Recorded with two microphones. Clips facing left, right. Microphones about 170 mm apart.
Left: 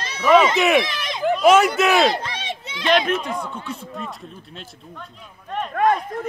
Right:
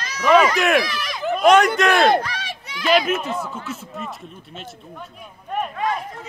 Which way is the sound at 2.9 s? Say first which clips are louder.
Right 1 dB; 5° right (ahead or behind).